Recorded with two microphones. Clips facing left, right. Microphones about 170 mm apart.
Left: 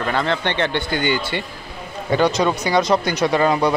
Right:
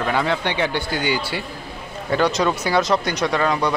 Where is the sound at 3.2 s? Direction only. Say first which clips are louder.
Left 5 dB; 25° left (ahead or behind).